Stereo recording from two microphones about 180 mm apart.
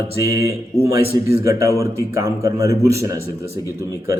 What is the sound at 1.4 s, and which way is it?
A man's voice, 15° right (ahead or behind).